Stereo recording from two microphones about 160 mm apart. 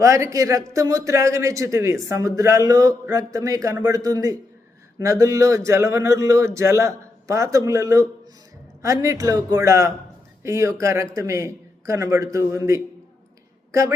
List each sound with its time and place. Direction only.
0.0 s speech: 20° right (ahead or behind)